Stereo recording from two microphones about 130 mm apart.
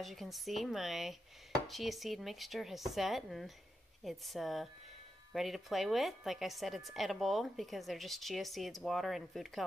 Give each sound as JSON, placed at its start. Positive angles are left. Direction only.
{"t": 0.0, "sound": "a woman's voice", "side_deg": 0}